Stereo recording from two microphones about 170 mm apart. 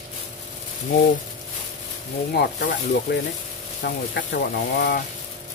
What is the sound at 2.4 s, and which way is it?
Speech, 55° left (ahead or behind).